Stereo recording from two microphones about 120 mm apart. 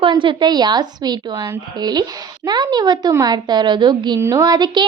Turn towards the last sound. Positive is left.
turn(degrees=-35)  # may be behind; listen again after turning